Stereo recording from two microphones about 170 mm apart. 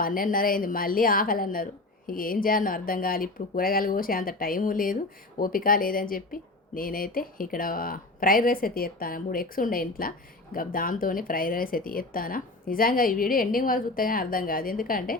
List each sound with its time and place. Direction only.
0.0 s speech: 55° left (ahead or behind)